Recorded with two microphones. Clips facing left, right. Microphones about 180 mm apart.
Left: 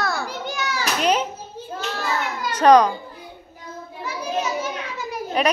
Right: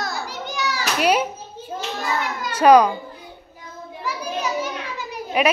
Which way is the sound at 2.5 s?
10° right (ahead or behind).